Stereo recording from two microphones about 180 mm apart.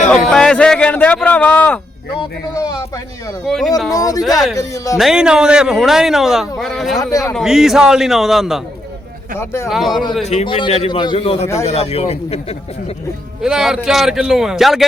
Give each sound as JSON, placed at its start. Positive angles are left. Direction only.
{"t": 0.1, "sound": "speech", "side_deg": 5}
{"t": 3.4, "sound": "speech", "side_deg": 0}
{"t": 3.9, "sound": "a man's voice", "side_deg": 20}
{"t": 4.9, "sound": "speech", "side_deg": -5}
{"t": 6.9, "sound": "a man's voice", "side_deg": 20}
{"t": 7.3, "sound": "speech", "side_deg": 0}
{"t": 9.4, "sound": "speech", "side_deg": 15}
{"t": 9.6, "sound": "speech", "side_deg": 0}
{"t": 10.2, "sound": "a man's voice", "side_deg": 30}
{"t": 13.4, "sound": "speech", "side_deg": -5}